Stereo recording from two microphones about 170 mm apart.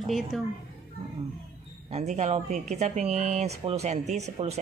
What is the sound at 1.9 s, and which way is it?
Speech, 40° right (ahead or behind).